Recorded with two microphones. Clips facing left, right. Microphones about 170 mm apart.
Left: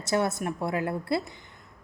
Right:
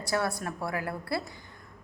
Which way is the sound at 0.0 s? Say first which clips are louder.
Left 3 dB; 20° left (ahead or behind).